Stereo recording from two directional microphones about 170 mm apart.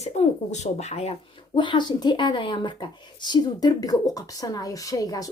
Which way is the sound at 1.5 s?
25° left (ahead or behind).